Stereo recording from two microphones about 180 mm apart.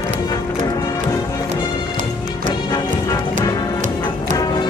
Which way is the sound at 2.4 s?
25° left (ahead or behind).